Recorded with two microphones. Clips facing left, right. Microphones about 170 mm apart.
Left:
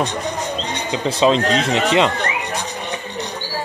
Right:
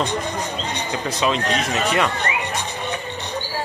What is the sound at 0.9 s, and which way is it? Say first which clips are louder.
Speech: left 7 dB; 30° left (ahead or behind).